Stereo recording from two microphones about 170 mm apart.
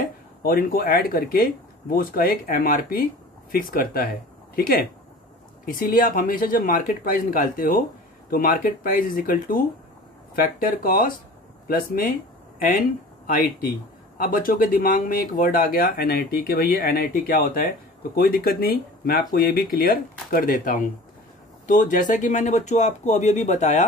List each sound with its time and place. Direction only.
0.4 s speech: 55° left (ahead or behind)